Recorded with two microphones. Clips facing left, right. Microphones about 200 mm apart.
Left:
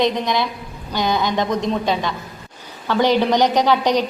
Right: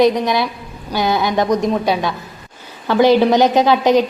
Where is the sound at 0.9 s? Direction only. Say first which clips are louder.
Right 3 dB; 10° right (ahead or behind).